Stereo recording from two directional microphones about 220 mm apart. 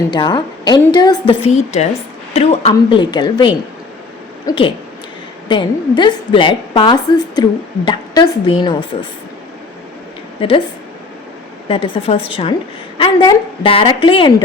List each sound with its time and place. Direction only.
0.1 s a woman's voice: 20° left (ahead or behind)
1.3 s a woman's voice: 30° left (ahead or behind)
11.7 s a woman's voice: 25° left (ahead or behind)